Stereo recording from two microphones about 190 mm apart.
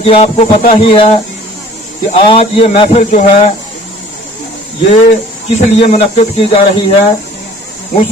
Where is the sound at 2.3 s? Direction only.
30° left (ahead or behind).